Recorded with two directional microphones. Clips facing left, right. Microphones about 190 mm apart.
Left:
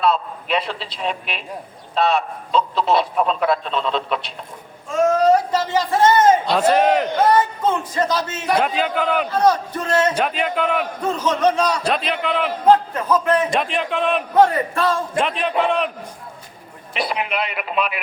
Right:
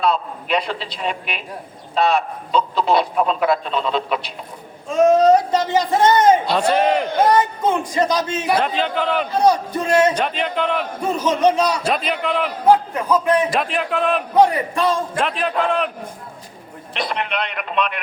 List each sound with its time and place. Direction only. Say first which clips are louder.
0.0 s speech: even; centre (ahead or behind)
4.9 s speech: right 3 dB; 20° right (ahead or behind)
6.5 s speech: left 1 dB; 5° left (ahead or behind)
7.3 s a man's voice: even; 15° right (ahead or behind)
8.5 s a man's voice: left 3 dB; 5° left (ahead or behind)
9.3 s a man's voice: right 3 dB; 10° right (ahead or behind)
10.2 s speech: left 1 dB; 5° left (ahead or behind)
11.0 s a man's voice: right 2 dB; 10° right (ahead or behind)
12.6 s a man's voice: even; 10° right (ahead or behind)
13.5 s speech: even; centre (ahead or behind)
14.3 s a man's voice: even; 15° right (ahead or behind)
15.2 s speech: left 3 dB; centre (ahead or behind)
16.9 s speech: left 1 dB; 5° left (ahead or behind)